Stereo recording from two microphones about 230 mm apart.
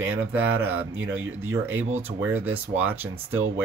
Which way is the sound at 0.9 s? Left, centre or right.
Right.